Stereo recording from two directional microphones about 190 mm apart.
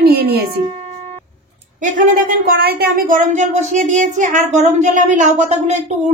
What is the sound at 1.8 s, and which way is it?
Speech, 40° right (ahead or behind).